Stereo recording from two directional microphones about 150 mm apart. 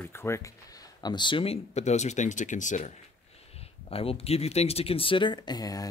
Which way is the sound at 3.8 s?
40° left (ahead or behind).